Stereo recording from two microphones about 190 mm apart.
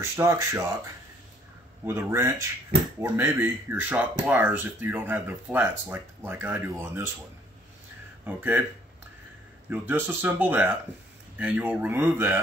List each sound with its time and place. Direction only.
0.1 s speech: 15° right (ahead or behind)
1.9 s speech: 15° right (ahead or behind)
8.4 s speech: 10° right (ahead or behind)
9.7 s speech: 10° right (ahead or behind)